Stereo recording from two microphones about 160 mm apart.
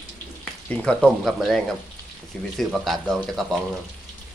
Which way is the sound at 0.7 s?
5° left (ahead or behind).